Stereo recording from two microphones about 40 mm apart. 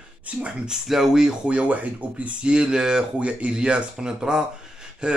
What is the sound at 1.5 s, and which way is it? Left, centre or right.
Speech, right.